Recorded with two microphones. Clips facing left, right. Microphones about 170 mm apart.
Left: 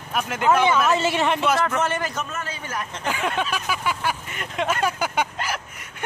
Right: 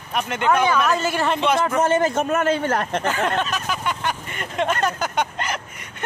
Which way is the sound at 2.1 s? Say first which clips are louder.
Right 11 dB; 55° right (ahead or behind).